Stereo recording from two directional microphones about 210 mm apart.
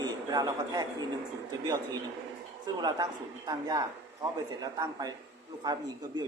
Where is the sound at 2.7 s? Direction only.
20° right (ahead or behind).